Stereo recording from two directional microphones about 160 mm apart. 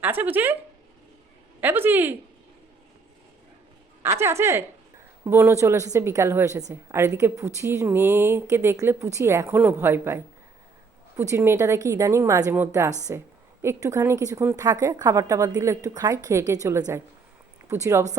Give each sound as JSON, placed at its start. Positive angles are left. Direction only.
{"t": 0.0, "sound": "a woman's voice", "side_deg": -10}
{"t": 1.6, "sound": "a woman's voice", "side_deg": -10}
{"t": 4.2, "sound": "a woman's voice", "side_deg": -15}